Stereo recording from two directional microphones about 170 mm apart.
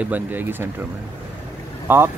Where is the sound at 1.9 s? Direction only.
10° right (ahead or behind).